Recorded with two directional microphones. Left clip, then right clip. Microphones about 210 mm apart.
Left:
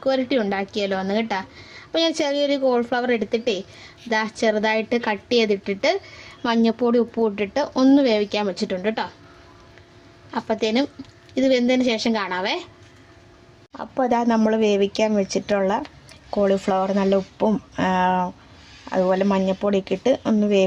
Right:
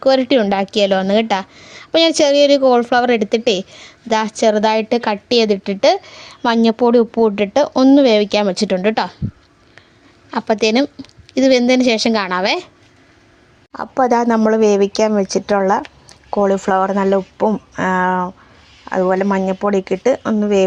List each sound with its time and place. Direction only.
0.0 s a woman's voice: 40° right (ahead or behind)
10.3 s a woman's voice: 50° right (ahead or behind)
13.7 s a woman's voice: 25° right (ahead or behind)
14.3 s speech: 10° right (ahead or behind)
15.2 s a woman's voice: 20° right (ahead or behind)
16.7 s speech: 5° right (ahead or behind)